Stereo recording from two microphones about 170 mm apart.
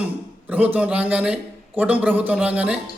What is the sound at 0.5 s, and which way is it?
A man's voice, 10° right (ahead or behind).